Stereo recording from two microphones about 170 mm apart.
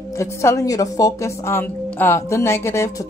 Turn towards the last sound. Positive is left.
turn(degrees=15)  # may be behind; listen again after turning